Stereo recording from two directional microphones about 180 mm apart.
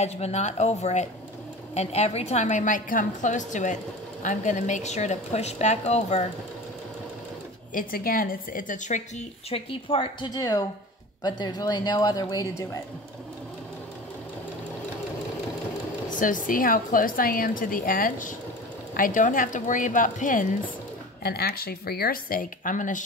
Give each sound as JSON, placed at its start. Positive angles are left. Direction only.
{"t": 0.0, "sound": "a woman's voice", "side_deg": 40}
{"t": 7.7, "sound": "a woman's voice", "side_deg": 55}
{"t": 16.1, "sound": "a woman's voice", "side_deg": 45}
{"t": 21.2, "sound": "speech", "side_deg": 60}